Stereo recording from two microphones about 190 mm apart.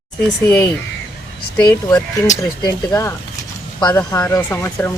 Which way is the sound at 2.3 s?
15° left (ahead or behind).